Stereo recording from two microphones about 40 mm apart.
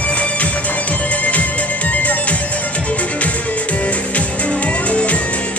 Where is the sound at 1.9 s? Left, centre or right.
Left.